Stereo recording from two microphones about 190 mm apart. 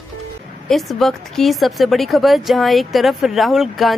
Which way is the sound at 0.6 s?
Centre (ahead or behind).